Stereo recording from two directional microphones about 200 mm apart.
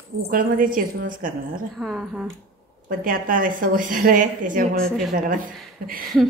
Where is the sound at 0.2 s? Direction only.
45° right (ahead or behind).